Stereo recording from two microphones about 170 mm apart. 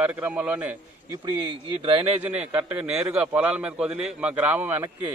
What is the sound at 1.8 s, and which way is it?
Speech, 30° right (ahead or behind).